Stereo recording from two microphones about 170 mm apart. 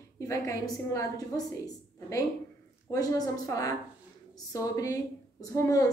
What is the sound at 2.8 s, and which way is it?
A woman's voice, 20° left (ahead or behind).